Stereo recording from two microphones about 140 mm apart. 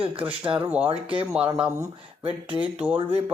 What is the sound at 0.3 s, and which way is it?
Speech, 10° right (ahead or behind).